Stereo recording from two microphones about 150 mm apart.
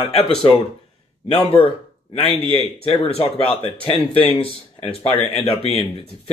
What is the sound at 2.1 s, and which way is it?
Speech, 40° left (ahead or behind).